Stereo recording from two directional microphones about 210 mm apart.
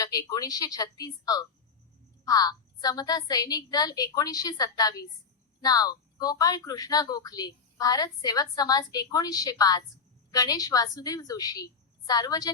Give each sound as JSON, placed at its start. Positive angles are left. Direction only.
{"t": 0.0, "sound": "speech", "side_deg": 15}